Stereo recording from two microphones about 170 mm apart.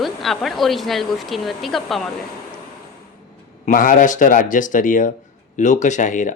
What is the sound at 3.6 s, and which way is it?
Speech, 50° left (ahead or behind).